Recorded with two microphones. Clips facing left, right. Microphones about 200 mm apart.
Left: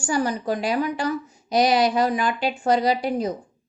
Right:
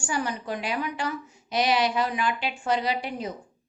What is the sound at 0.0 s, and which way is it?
A woman's voice, 40° left (ahead or behind).